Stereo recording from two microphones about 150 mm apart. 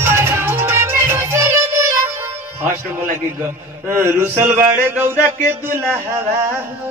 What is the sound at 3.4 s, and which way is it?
Mantra, 15° right (ahead or behind).